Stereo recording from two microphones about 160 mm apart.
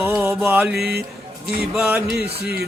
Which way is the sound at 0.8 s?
90° right.